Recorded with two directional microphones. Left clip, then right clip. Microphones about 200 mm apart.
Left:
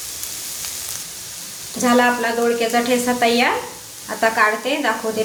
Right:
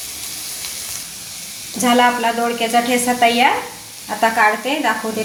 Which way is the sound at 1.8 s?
5° right (ahead or behind).